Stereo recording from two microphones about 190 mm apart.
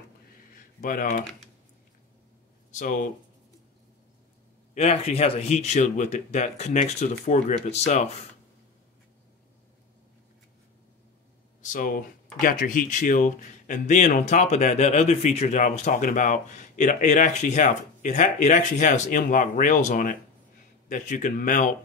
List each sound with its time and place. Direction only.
0.6 s a sound: 45° left (ahead or behind)
2.7 s a man's voice: 40° left (ahead or behind)
4.7 s speech: 35° left (ahead or behind)
11.6 s a man's voice: 45° left (ahead or behind)